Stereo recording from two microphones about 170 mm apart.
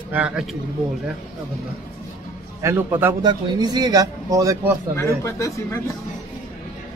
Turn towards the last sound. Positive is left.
turn(degrees=15)  # may be behind; listen again after turning